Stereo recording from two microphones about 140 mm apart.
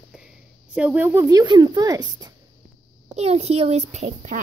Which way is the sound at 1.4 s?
30° right (ahead or behind).